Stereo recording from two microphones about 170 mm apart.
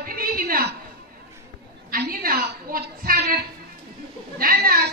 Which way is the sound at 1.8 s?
60° right (ahead or behind).